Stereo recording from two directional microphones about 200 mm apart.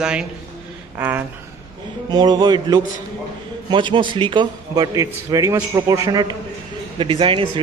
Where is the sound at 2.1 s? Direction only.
20° right (ahead or behind).